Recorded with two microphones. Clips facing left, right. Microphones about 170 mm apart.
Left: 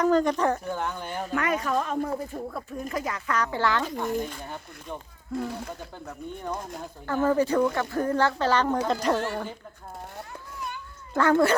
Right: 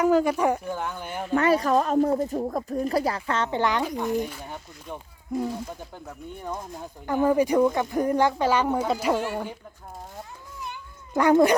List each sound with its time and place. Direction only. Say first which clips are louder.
0.0 s speech: right 1 dB; 10° right (ahead or behind)
1.3 s speech: right 6 dB; 35° right (ahead or behind); by 9.6 s 10° right (ahead or behind)
10.7 s cat: right 1 dB; 15° right (ahead or behind)